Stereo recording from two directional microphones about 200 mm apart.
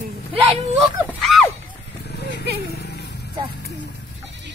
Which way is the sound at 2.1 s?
55° left (ahead or behind).